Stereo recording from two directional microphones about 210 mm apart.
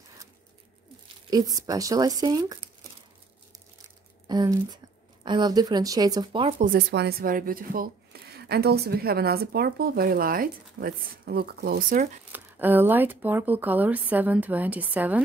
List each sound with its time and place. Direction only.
1.0 s speech: 20° right (ahead or behind)
4.3 s speech: 20° right (ahead or behind)
6.6 s speech: 45° right (ahead or behind)
12.3 s speech: 10° right (ahead or behind)